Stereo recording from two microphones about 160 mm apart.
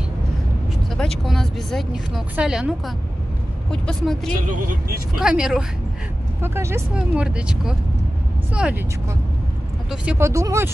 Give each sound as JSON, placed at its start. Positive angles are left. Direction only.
{"t": 0.9, "sound": "speech", "side_deg": 5}
{"t": 3.7, "sound": "speech", "side_deg": 5}
{"t": 4.5, "sound": "speech", "side_deg": -55}
{"t": 5.2, "sound": "speech", "side_deg": -5}
{"t": 6.4, "sound": "speech", "side_deg": -15}
{"t": 7.0, "sound": "speech", "side_deg": -5}
{"t": 10.1, "sound": "speech", "side_deg": -20}